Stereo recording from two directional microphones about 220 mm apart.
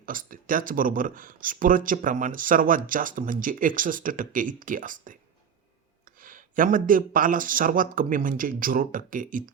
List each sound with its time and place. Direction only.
0.0 s speech: 40° right (ahead or behind)
6.2 s speech: 40° right (ahead or behind)